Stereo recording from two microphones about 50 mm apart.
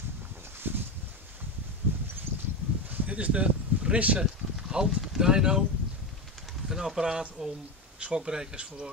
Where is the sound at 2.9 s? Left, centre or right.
Right.